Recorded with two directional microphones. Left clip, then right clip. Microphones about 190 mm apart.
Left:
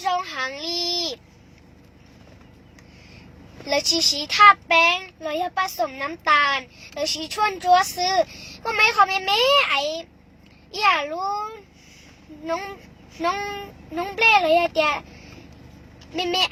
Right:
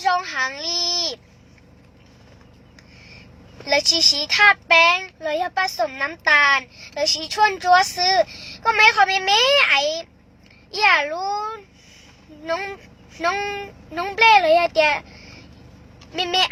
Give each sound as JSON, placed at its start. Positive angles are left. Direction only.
{"t": 0.1, "sound": "a sound", "side_deg": -10}
{"t": 3.7, "sound": "speech", "side_deg": -10}
{"t": 13.1, "sound": "speech", "side_deg": -15}
{"t": 16.1, "sound": "speech", "side_deg": -10}